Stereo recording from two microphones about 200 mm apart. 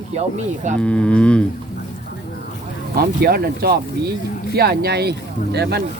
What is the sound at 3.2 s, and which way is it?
Speech, 50° right (ahead or behind).